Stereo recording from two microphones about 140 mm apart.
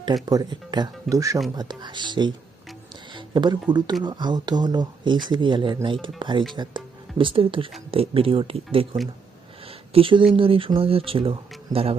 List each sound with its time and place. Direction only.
0.0 s speech: 30° right (ahead or behind)
9.6 s a sound: 40° right (ahead or behind)
10.3 s speech: 40° right (ahead or behind)